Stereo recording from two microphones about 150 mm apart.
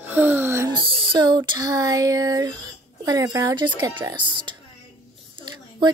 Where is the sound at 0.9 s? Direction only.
35° right (ahead or behind).